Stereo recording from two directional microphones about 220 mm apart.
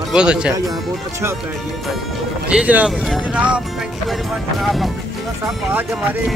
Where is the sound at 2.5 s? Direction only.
5° right (ahead or behind).